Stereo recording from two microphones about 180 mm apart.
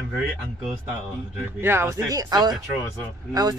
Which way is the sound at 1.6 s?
15° right (ahead or behind).